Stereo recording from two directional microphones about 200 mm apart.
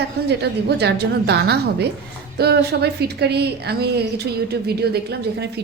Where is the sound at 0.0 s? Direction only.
55° right (ahead or behind).